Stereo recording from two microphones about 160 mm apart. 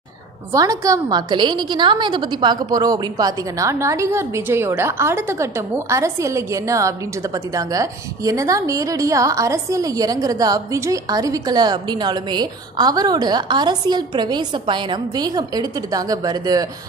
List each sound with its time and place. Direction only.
0.5 s a woman's voice: 20° right (ahead or behind)